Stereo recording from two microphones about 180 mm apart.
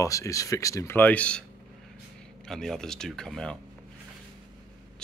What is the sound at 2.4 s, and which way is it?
Speech, centre (ahead or behind).